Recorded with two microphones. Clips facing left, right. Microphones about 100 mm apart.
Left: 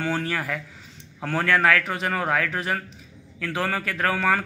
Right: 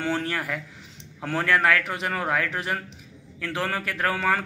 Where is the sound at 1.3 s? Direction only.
Centre (ahead or behind).